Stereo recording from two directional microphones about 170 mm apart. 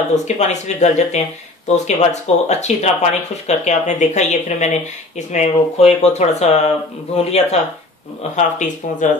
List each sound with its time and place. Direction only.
0.1 s speech: 40° left (ahead or behind)